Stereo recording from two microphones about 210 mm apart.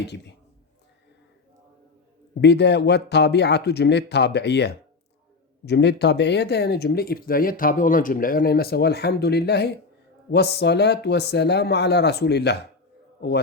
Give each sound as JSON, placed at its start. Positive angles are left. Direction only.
{"t": 2.4, "sound": "speech", "side_deg": 55}